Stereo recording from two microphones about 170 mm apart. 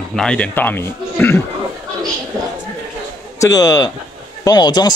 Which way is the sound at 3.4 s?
20° left (ahead or behind).